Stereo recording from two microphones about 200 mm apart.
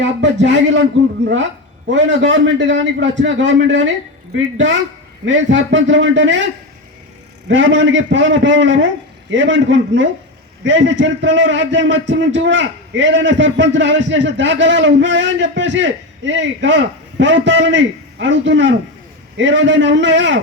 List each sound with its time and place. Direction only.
0.0 s a man's voice: 65° right (ahead or behind)
1.9 s a man's voice: 65° right (ahead or behind)
7.4 s a man's voice: 65° right (ahead or behind)